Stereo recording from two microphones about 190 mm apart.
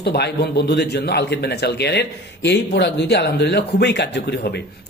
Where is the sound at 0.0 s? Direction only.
60° left (ahead or behind).